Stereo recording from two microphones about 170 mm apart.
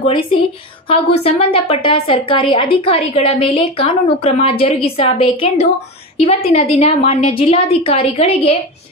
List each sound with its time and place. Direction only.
0.0 s a woman's voice: 30° left (ahead or behind)